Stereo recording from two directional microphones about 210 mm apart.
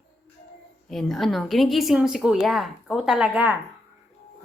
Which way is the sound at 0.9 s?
Centre (ahead or behind).